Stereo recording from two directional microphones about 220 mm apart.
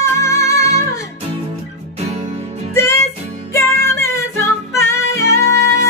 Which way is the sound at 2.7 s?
10° left (ahead or behind).